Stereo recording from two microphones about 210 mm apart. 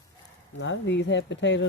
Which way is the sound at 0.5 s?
55° left (ahead or behind).